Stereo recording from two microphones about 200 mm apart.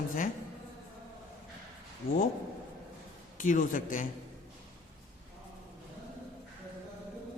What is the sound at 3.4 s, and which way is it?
Speech, 40° left (ahead or behind).